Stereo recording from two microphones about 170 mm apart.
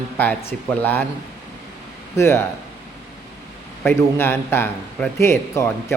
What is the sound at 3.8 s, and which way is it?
A man's voice, 10° left (ahead or behind).